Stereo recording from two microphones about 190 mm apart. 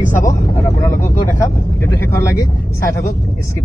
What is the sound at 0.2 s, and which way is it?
Vehicle, 15° left (ahead or behind).